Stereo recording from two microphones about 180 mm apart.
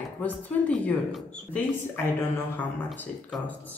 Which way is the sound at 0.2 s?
5° left (ahead or behind).